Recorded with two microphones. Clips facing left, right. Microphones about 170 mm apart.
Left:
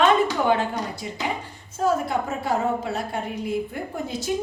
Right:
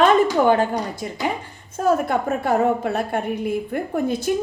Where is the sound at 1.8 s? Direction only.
55° right (ahead or behind).